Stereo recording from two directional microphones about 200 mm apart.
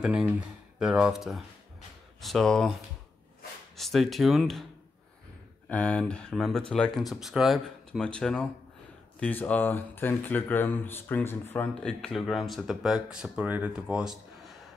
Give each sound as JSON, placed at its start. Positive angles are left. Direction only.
{"t": 0.0, "sound": "speech", "side_deg": -5}
{"t": 3.7, "sound": "speech", "side_deg": 0}
{"t": 5.7, "sound": "speech", "side_deg": 5}